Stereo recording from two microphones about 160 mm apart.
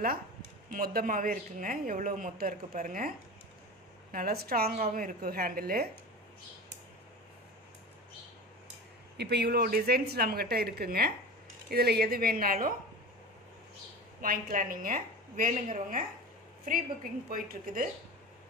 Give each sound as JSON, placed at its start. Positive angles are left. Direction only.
{"t": 0.7, "sound": "speech", "side_deg": -65}
{"t": 4.7, "sound": "speech", "side_deg": -55}
{"t": 9.1, "sound": "speech", "side_deg": -90}
{"t": 14.2, "sound": "speech", "side_deg": -60}
{"t": 17.3, "sound": "speech", "side_deg": -65}